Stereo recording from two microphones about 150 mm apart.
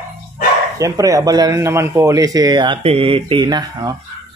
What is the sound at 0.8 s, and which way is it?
Speech, 25° right (ahead or behind).